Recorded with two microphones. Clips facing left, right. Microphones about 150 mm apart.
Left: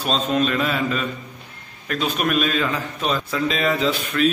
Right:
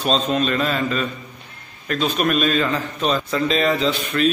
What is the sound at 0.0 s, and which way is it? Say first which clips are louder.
A man's voice: right 1 dB; 5° left (ahead or behind).